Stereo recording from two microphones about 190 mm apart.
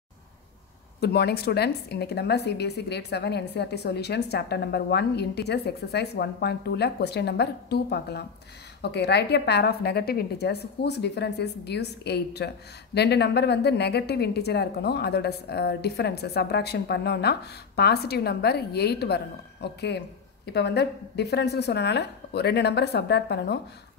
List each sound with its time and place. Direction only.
1.0 s a woman's voice: 60° left (ahead or behind)